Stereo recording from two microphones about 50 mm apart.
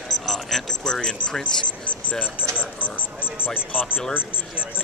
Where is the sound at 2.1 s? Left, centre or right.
Left.